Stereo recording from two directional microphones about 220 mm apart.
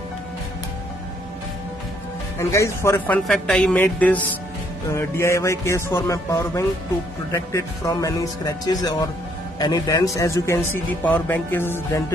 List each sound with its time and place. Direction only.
2.3 s music: 15° left (ahead or behind)
3.3 s speech: centre (ahead or behind)
4.9 s music: 10° left (ahead or behind)
9.6 s a man's voice: 20° left (ahead or behind)
10.1 s music: 15° left (ahead or behind)